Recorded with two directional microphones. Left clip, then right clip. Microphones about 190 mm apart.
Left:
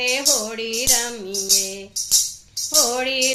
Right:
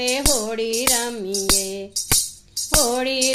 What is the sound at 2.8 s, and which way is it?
Music, 50° right (ahead or behind).